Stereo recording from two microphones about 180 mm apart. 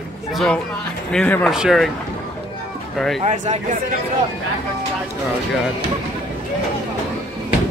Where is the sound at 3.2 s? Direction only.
40° right (ahead or behind).